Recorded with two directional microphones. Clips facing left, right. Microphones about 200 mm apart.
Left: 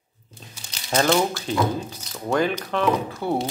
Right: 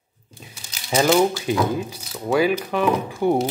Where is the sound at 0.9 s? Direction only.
10° right (ahead or behind).